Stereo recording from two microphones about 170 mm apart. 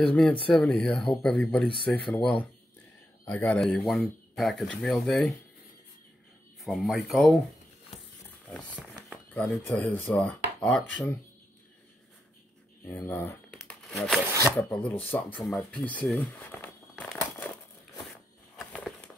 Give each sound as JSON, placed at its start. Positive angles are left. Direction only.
{"t": 0.0, "sound": "rub", "side_deg": 5}
{"t": 0.5, "sound": "speech", "side_deg": 5}
{"t": 6.6, "sound": "speech", "side_deg": 0}
{"t": 8.5, "sound": "speech", "side_deg": 5}
{"t": 9.3, "sound": "rub", "side_deg": 10}
{"t": 12.8, "sound": "rub", "side_deg": 15}
{"t": 13.5, "sound": "crumpling", "side_deg": 5}
{"t": 14.4, "sound": "rub", "side_deg": 10}
{"t": 15.8, "sound": "speech", "side_deg": 10}